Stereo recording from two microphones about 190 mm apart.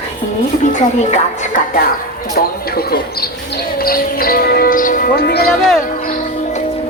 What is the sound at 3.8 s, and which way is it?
Music, 50° left (ahead or behind).